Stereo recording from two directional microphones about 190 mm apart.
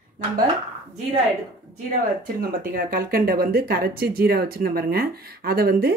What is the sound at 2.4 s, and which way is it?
Speech, 50° right (ahead or behind).